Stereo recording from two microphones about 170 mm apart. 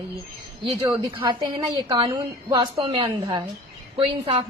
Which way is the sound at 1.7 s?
30° right (ahead or behind).